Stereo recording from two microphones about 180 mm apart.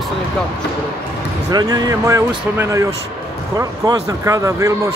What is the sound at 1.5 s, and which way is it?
Speech, 20° right (ahead or behind).